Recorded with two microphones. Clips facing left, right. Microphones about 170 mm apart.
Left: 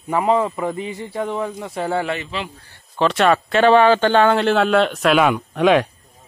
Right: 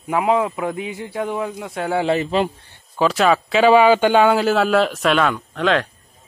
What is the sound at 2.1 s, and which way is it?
Speech, 40° right (ahead or behind).